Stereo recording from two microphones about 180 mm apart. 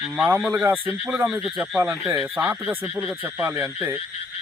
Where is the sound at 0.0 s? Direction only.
10° right (ahead or behind).